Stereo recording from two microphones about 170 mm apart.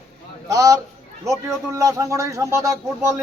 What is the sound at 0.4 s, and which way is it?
Speech, 20° right (ahead or behind).